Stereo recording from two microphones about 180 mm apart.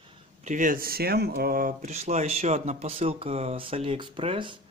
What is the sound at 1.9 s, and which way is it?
Speech, 40° right (ahead or behind).